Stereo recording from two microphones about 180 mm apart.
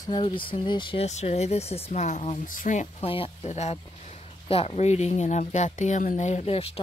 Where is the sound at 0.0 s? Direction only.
25° left (ahead or behind).